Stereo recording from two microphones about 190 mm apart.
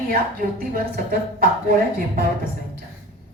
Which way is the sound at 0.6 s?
50° right (ahead or behind).